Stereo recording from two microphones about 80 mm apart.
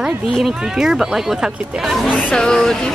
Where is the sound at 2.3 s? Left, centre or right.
Centre.